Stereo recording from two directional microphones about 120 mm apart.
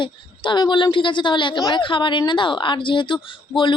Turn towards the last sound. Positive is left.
turn(degrees=40)  # may be behind; listen again after turning